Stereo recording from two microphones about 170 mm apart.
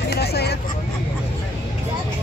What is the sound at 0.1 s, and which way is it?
Vehicle, 70° left (ahead or behind).